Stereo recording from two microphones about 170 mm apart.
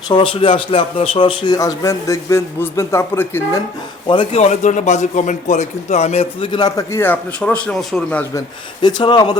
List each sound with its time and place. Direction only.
0.1 s a man's voice: 30° left (ahead or behind); by 3.6 s 15° left (ahead or behind)
4.1 s a man's voice: 35° left (ahead or behind); by 8.2 s centre (ahead or behind)
8.8 s a man's voice: 25° left (ahead or behind)